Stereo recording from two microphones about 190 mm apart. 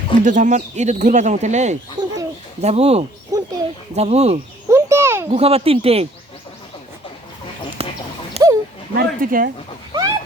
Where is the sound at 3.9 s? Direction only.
35° right (ahead or behind).